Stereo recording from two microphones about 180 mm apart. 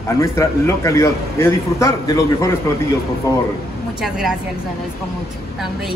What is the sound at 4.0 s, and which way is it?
Speech, centre (ahead or behind).